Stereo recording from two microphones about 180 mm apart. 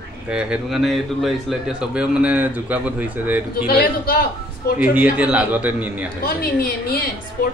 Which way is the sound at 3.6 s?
55° left (ahead or behind).